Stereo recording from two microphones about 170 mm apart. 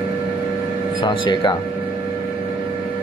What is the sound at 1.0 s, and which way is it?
Speech, 30° left (ahead or behind).